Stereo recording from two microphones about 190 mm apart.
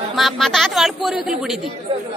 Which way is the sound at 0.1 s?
Centre (ahead or behind).